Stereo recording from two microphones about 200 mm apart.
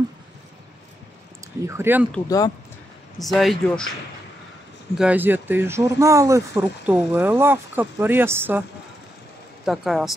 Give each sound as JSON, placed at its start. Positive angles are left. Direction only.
{"t": 1.6, "sound": "speech", "side_deg": -15}
{"t": 2.2, "sound": "speech", "side_deg": 15}
{"t": 3.2, "sound": "speech", "side_deg": 0}
{"t": 4.9, "sound": "speech", "side_deg": -5}
{"t": 9.7, "sound": "speech", "side_deg": 0}